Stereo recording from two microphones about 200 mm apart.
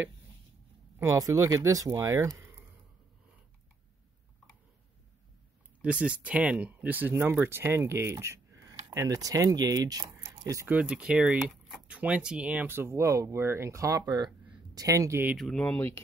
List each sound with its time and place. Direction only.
0.9 s speech: 15° right (ahead or behind)
5.8 s speech: 5° right (ahead or behind)
15.3 s speech: centre (ahead or behind)
15.6 s speech: 10° left (ahead or behind)